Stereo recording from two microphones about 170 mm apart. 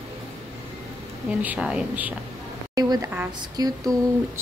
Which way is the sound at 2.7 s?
20° right (ahead or behind).